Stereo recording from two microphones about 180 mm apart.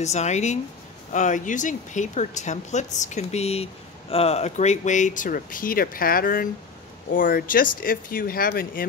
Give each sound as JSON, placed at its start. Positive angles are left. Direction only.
{"t": 0.0, "sound": "speech", "side_deg": 40}